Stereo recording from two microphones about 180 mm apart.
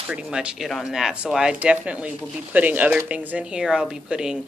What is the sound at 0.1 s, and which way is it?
Speech, 5° right (ahead or behind).